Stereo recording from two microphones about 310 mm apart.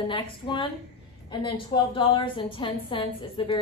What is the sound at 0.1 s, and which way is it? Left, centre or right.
A man's voice, centre.